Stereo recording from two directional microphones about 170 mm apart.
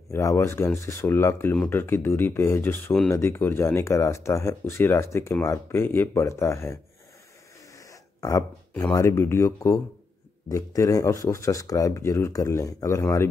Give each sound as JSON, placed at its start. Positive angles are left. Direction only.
{"t": 0.1, "sound": "speech", "side_deg": 20}